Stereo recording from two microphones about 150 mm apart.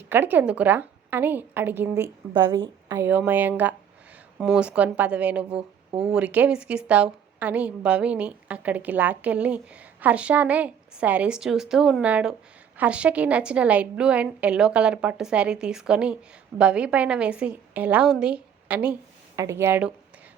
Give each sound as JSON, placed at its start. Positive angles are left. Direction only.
{"t": 0.1, "sound": "speech", "side_deg": -15}
{"t": 2.3, "sound": "a woman's voice", "side_deg": -30}
{"t": 2.9, "sound": "speech", "side_deg": -15}